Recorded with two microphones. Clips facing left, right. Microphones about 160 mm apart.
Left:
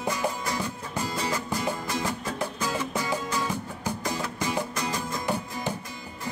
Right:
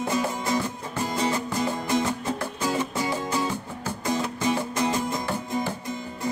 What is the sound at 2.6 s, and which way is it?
Music, 25° right (ahead or behind).